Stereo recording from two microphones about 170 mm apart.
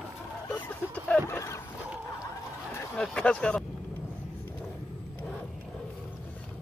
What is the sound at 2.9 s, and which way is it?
Speech, 5° left (ahead or behind).